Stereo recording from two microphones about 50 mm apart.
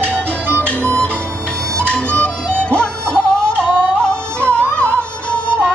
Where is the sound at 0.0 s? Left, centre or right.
Right.